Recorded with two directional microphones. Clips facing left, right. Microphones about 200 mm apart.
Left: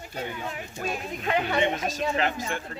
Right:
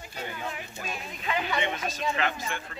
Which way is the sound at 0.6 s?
45° left (ahead or behind).